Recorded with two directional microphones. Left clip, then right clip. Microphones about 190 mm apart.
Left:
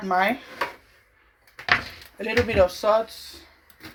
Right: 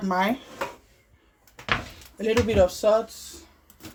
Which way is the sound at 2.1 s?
45° right (ahead or behind).